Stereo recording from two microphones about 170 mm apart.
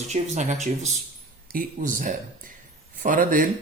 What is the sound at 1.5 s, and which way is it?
Speech, 55° right (ahead or behind).